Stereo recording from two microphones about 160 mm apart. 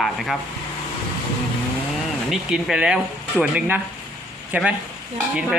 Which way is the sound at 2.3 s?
5° right (ahead or behind).